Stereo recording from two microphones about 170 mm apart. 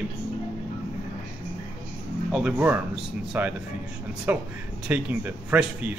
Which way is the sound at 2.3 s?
Centre (ahead or behind).